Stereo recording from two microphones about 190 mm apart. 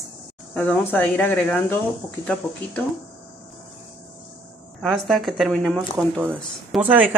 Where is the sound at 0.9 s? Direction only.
10° left (ahead or behind).